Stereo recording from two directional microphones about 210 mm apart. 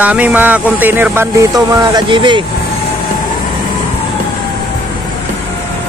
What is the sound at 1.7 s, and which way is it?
Speech, 20° right (ahead or behind).